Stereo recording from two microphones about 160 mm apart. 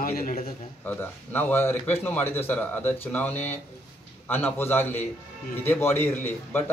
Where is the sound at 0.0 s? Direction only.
65° left (ahead or behind).